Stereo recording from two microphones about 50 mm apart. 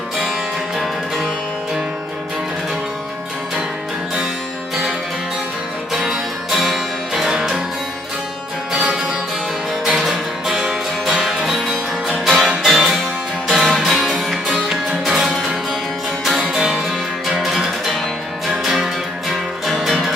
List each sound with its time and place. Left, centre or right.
0.8 s music: centre
5.9 s music: centre
8.7 s music: centre
14.4 s music: centre